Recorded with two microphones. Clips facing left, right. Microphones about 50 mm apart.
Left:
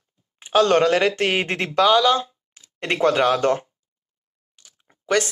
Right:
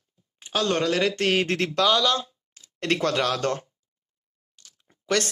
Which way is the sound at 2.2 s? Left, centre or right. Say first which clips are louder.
Left 8 dB; left.